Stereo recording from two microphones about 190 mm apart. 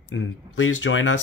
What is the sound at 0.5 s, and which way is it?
Speech, 90° left.